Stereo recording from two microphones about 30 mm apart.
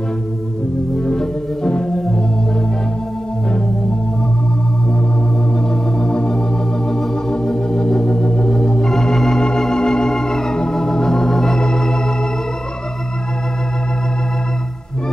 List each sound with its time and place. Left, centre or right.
1.2 s organ: left
5.9 s organ: left